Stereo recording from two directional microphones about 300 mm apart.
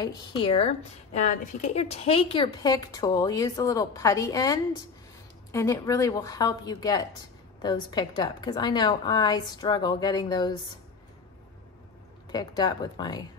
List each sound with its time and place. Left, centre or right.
0.0 s speech: centre
12.3 s speech: centre